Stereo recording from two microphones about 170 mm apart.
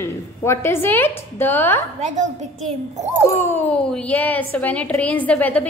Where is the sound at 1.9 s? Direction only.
45° right (ahead or behind).